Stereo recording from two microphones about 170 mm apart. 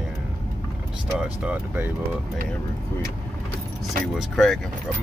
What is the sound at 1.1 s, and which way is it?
Speech, 5° right (ahead or behind).